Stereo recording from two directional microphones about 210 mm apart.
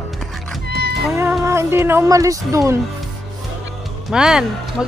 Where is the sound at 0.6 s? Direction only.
50° right (ahead or behind).